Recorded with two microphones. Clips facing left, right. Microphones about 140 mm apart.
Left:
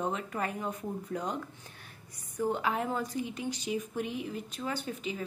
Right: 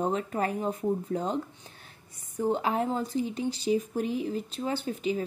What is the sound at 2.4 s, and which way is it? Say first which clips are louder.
A woman's voice: right 4 dB; 30° right (ahead or behind).